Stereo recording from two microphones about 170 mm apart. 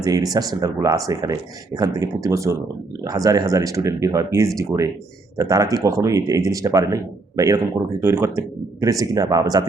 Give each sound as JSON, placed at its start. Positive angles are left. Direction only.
{"t": 0.0, "sound": "speech", "side_deg": -20}